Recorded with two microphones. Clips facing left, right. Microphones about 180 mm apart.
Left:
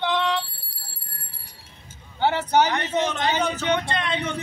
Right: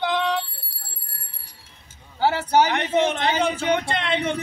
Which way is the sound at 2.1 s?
5° right (ahead or behind).